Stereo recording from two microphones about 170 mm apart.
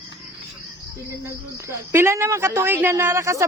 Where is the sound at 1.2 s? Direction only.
15° right (ahead or behind).